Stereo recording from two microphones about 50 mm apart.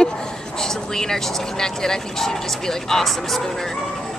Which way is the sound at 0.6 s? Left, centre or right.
Centre.